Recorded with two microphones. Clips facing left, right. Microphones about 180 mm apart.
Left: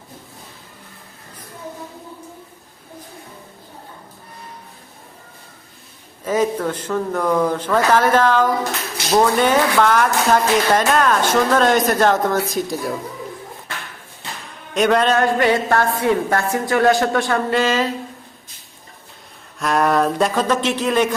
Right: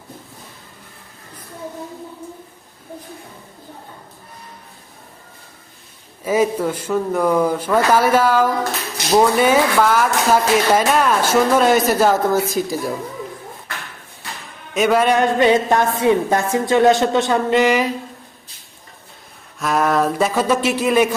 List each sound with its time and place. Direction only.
6.2 s speech: 10° right (ahead or behind)
14.7 s a woman's voice: 5° right (ahead or behind)
19.5 s speech: centre (ahead or behind)